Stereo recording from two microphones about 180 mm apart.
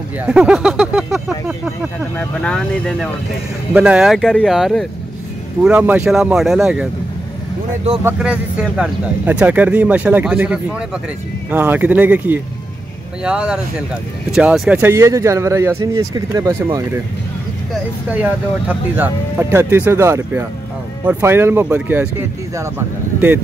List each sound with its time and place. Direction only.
0.2 s speech: 5° right (ahead or behind)
3.7 s speech: 5° right (ahead or behind)
8.0 s speech: 5° right (ahead or behind)
18.7 s speech: 10° right (ahead or behind)